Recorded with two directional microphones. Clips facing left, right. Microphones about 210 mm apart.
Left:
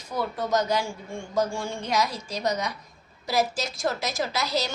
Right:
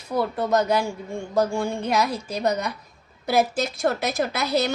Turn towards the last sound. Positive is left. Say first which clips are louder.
# right 5 dB
turn(degrees=-60)  # may be behind; listen again after turning